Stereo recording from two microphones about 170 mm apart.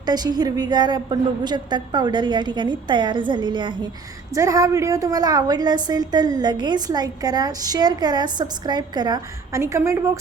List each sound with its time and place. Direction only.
0.0 s a woman's voice: 25° right (ahead or behind)